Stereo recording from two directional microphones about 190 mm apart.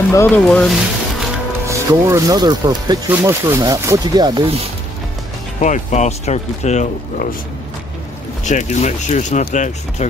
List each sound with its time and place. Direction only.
0.1 s speech: 10° left (ahead or behind)
1.7 s speech: 15° right (ahead or behind)
5.6 s speech: 40° left (ahead or behind)
8.5 s speech: 40° left (ahead or behind)